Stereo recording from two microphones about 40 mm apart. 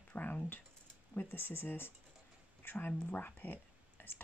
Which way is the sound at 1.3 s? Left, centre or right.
Left.